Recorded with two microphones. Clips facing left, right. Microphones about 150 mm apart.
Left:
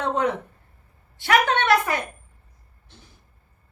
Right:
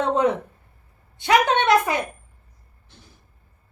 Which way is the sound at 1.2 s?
20° right (ahead or behind).